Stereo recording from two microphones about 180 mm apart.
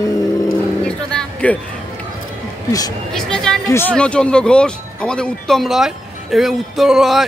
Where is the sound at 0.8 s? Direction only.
5° left (ahead or behind).